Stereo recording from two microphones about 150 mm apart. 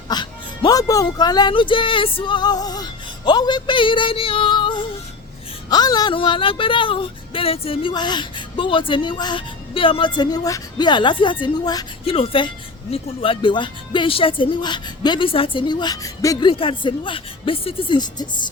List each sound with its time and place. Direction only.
0.1 s speech: 30° left (ahead or behind)
12.0 s speech: 40° left (ahead or behind)